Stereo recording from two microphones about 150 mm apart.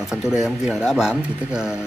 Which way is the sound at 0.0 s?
5° right (ahead or behind).